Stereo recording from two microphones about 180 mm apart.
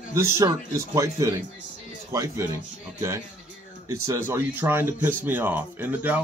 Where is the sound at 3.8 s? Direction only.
15° right (ahead or behind).